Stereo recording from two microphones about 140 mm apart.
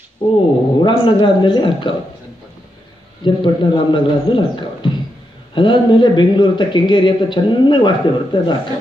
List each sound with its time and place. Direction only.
0.2 s a man's voice: 40° left (ahead or behind)
3.3 s a man's voice: 35° left (ahead or behind)